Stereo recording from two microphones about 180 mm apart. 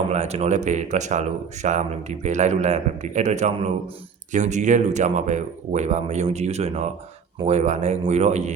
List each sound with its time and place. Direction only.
0.1 s speech: 40° right (ahead or behind)